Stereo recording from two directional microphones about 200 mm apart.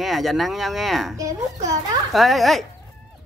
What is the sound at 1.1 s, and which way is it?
Speech, 15° right (ahead or behind).